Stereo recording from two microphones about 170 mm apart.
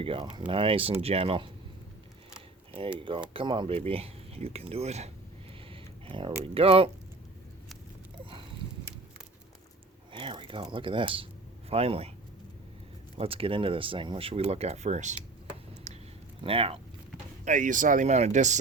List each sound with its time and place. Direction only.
0.0 s speech: 30° right (ahead or behind)
3.0 s speech: 30° right (ahead or behind)
5.6 s a sound: 30° right (ahead or behind)
6.4 s speech: 35° right (ahead or behind)
8.2 s a sound: 30° right (ahead or behind)
10.1 s speech: 30° right (ahead or behind)
13.1 s speech: 35° right (ahead or behind)
16.4 s speech: 35° right (ahead or behind)
17.4 s speech: 50° right (ahead or behind)